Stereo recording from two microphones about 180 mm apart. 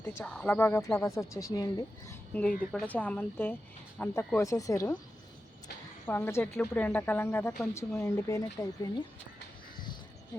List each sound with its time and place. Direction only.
0.0 s speech: 15° left (ahead or behind)
2.3 s speech: 5° left (ahead or behind)
6.1 s speech: 15° left (ahead or behind)